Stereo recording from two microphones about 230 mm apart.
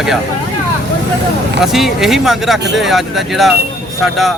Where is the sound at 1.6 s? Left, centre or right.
Centre.